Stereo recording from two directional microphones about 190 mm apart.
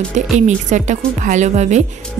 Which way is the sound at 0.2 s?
40° right (ahead or behind).